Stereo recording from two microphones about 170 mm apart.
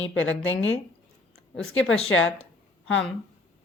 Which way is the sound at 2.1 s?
90° left.